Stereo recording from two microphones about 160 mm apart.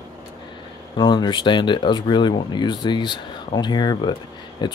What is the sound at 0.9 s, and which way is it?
Speech, 30° left (ahead or behind).